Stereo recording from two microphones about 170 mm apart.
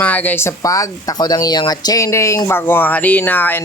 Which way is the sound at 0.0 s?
10° left (ahead or behind).